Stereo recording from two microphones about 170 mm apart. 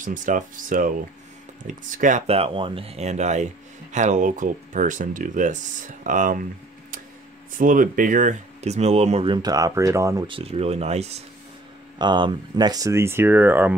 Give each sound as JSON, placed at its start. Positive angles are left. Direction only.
{"t": 0.0, "sound": "speech", "side_deg": -50}
{"t": 7.5, "sound": "speech", "side_deg": -50}
{"t": 10.3, "sound": "speech", "side_deg": -35}
{"t": 12.0, "sound": "speech", "side_deg": -25}